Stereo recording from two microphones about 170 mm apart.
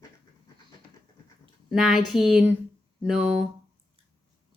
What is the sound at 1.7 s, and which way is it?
Speech, 5° right (ahead or behind).